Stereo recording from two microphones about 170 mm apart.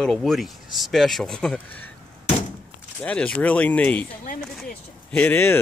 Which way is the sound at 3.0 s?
10° left (ahead or behind).